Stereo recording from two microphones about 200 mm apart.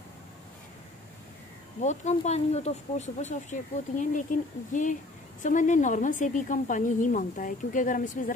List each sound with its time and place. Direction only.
1.8 s a woman's voice: 35° left (ahead or behind)